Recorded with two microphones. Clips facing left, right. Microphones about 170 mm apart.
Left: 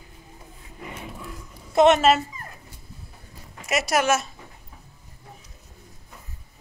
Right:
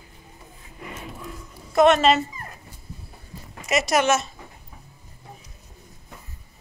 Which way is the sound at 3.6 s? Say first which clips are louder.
Right 2 dB; 5° left (ahead or behind).